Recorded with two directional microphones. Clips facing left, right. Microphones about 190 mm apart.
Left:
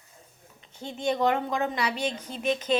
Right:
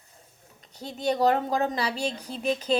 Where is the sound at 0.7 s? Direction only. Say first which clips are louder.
Right 1 dB; 40° right (ahead or behind).